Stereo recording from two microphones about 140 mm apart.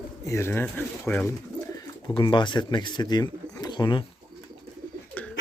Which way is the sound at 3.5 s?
30° left (ahead or behind).